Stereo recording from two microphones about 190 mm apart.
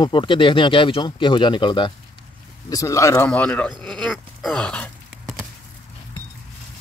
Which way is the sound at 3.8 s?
5° left (ahead or behind).